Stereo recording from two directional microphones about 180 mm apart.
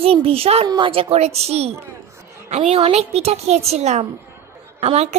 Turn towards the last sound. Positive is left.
turn(degrees=-35)  # may be behind; listen again after turning